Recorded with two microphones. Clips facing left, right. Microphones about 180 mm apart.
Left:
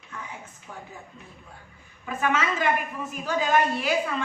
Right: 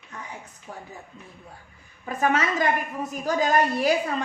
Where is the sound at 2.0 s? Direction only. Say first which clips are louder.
Right 2 dB; 40° right (ahead or behind).